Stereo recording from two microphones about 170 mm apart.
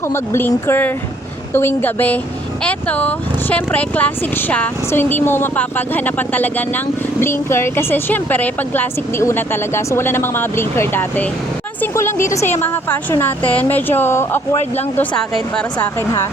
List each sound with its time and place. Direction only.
0.1 s speech: 15° left (ahead or behind)
14.9 s speech: 5° left (ahead or behind)